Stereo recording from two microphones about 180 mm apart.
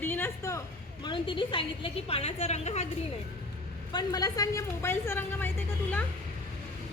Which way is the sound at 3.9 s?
20° left (ahead or behind).